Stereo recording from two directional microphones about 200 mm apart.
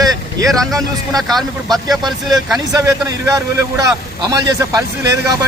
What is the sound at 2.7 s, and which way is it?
Speech, 15° right (ahead or behind).